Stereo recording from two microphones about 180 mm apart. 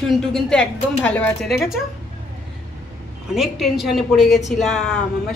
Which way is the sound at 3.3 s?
Centre (ahead or behind).